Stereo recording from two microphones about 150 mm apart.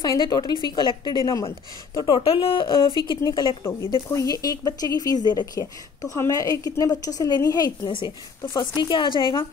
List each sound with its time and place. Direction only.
0.0 s speech: 25° left (ahead or behind)